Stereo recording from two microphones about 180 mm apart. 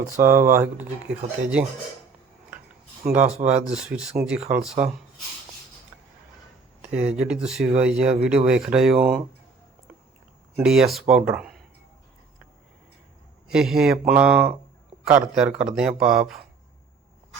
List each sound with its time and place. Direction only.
0.0 s speech: 15° right (ahead or behind)
3.2 s speech: 35° right (ahead or behind)
3.4 s speech: 5° right (ahead or behind)
7.2 s speech: 5° right (ahead or behind)
10.6 s speech: centre (ahead or behind)
13.5 s speech: 5° right (ahead or behind)